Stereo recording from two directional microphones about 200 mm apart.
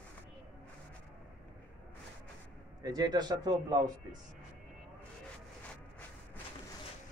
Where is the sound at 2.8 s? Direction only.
20° right (ahead or behind).